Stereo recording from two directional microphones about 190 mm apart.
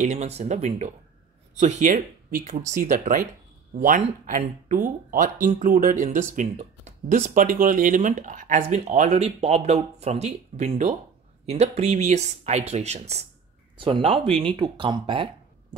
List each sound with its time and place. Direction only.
0.0 s speech: 35° right (ahead or behind)